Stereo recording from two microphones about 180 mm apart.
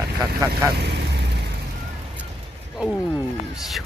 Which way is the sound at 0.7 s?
70° right (ahead or behind).